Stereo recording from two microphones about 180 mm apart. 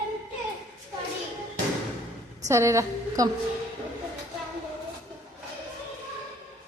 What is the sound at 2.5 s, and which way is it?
Speech, 15° right (ahead or behind).